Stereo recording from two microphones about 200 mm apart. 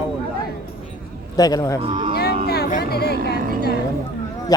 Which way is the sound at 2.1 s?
55° left (ahead or behind).